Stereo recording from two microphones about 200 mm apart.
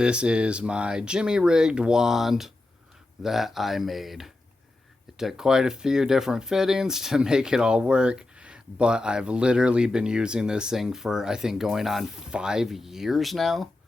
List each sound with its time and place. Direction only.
0.0 s speech: 5° right (ahead or behind)